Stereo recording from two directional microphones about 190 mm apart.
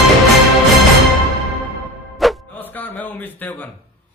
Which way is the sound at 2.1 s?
Centre (ahead or behind).